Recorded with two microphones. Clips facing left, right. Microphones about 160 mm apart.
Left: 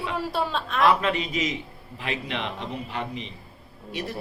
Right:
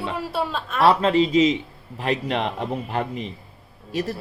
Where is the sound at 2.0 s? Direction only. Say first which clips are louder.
Right 7 dB; 40° right (ahead or behind).